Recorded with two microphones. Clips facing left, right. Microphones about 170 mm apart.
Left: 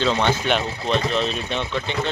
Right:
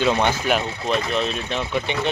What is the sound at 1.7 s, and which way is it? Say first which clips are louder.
Speech: right 2 dB; 15° right (ahead or behind).